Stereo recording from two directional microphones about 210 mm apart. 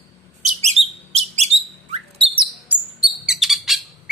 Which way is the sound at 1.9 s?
25° right (ahead or behind).